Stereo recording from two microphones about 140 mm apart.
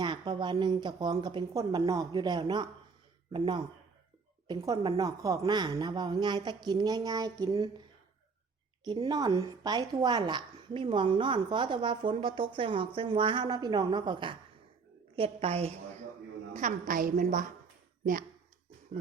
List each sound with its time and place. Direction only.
0.0 s a woman's voice: 35° right (ahead or behind)
4.6 s a woman's voice: 25° right (ahead or behind)
8.8 s a woman's voice: 30° right (ahead or behind); by 15.7 s 45° right (ahead or behind)
16.6 s a woman's voice: 65° right (ahead or behind)